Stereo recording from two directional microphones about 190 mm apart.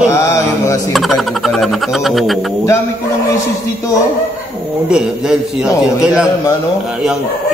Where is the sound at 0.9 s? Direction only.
Centre (ahead or behind).